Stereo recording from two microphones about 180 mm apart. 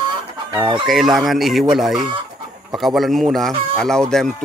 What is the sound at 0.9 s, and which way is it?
Speech, centre (ahead or behind).